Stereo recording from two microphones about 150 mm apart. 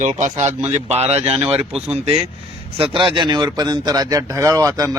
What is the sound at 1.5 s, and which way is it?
Speech, 5° right (ahead or behind).